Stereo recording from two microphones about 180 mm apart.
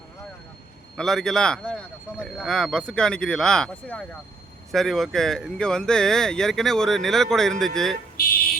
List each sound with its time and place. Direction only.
0.9 s speech: centre (ahead or behind)
8.1 s speech: 55° left (ahead or behind)